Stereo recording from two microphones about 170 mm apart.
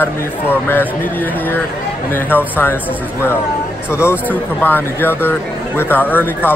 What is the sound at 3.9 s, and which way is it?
Speech, 15° left (ahead or behind).